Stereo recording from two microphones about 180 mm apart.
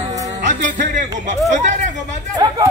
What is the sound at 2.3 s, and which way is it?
Chatter, 20° right (ahead or behind).